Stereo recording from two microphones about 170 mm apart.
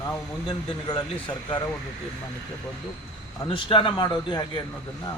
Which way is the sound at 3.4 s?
30° left (ahead or behind).